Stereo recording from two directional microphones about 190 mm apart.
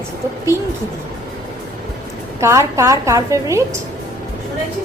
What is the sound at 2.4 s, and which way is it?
A woman's voice, 15° right (ahead or behind).